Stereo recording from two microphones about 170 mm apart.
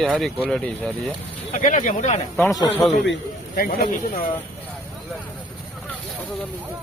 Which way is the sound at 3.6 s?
60° left (ahead or behind).